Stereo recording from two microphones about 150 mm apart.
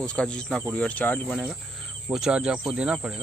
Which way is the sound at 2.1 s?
5° right (ahead or behind).